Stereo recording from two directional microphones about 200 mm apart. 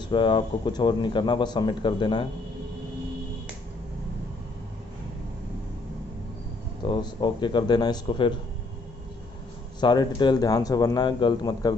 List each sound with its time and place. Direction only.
0.1 s speech: 25° left (ahead or behind)
6.8 s speech: 25° left (ahead or behind)
9.8 s speech: 20° left (ahead or behind)